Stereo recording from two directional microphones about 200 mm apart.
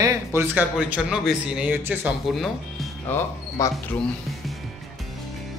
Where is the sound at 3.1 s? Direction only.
15° left (ahead or behind).